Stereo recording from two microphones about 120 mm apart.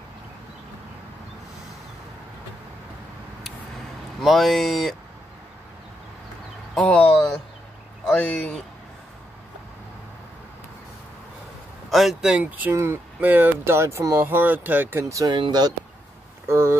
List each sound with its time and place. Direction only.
4.2 s speech: centre (ahead or behind)
6.7 s a sound: 10° left (ahead or behind)
8.0 s speech: 5° left (ahead or behind)
11.9 s speech: centre (ahead or behind); by 15.3 s 25° right (ahead or behind)
15.3 s speech: 40° right (ahead or behind)
16.4 s speech: 20° right (ahead or behind)